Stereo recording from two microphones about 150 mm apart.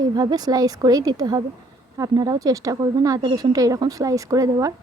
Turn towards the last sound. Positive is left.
turn(degrees=-20)  # may be behind; listen again after turning